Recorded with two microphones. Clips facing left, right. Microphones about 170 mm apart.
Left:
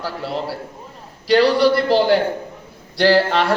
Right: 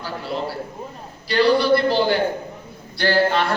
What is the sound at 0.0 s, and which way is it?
A man's voice, 90° left.